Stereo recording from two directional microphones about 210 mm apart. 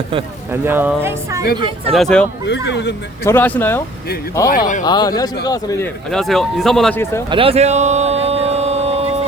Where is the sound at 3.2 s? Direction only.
10° left (ahead or behind).